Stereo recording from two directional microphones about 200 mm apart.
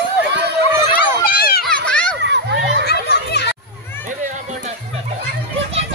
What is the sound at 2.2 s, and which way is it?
Children playing, 60° right (ahead or behind).